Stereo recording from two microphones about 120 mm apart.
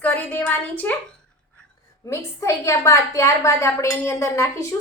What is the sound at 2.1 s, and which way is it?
A woman's voice, 25° left (ahead or behind).